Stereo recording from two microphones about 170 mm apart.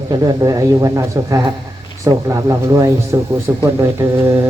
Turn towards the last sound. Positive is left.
turn(degrees=-15)  # may be behind; listen again after turning